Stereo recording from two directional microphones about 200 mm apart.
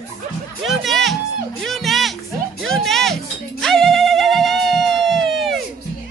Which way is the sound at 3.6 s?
Centre (ahead or behind).